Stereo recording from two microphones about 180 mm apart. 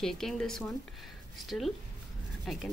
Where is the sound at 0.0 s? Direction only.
Centre (ahead or behind).